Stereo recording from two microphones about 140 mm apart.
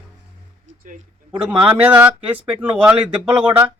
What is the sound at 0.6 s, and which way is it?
Music, 70° right (ahead or behind).